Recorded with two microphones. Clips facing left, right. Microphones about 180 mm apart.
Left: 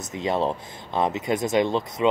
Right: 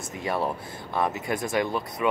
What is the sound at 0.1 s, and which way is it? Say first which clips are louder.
Speech: left 4 dB; 20° left (ahead or behind).